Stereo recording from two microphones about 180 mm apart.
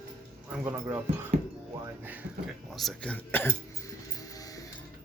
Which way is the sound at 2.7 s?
Centre (ahead or behind).